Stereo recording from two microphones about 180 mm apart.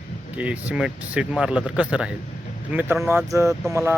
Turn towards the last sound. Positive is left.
turn(degrees=-15)  # may be behind; listen again after turning